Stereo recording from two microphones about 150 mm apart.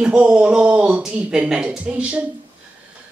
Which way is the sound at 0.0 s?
5° right (ahead or behind).